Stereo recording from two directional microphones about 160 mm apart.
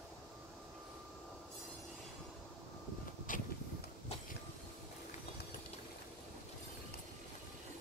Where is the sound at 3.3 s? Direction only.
55° left (ahead or behind).